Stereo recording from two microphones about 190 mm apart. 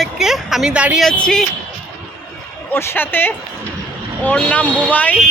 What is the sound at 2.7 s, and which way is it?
Speech, 10° left (ahead or behind).